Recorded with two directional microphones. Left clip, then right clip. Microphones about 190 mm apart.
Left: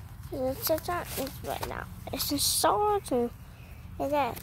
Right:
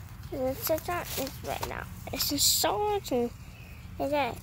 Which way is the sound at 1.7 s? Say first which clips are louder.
Even; 5° left (ahead or behind).